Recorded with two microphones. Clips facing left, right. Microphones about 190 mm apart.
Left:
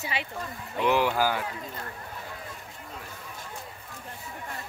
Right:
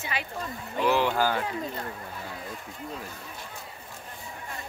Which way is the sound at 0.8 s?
15° left (ahead or behind).